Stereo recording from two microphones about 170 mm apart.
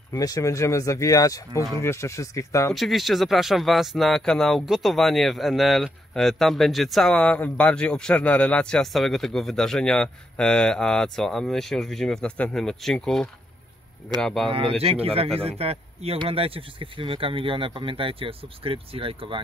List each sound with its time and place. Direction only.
0.1 s speech: 20° left (ahead or behind)
2.7 s speech: centre (ahead or behind)
14.8 s speech: 35° right (ahead or behind)